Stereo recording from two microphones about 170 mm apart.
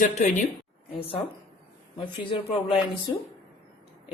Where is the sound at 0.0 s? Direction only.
45° left (ahead or behind).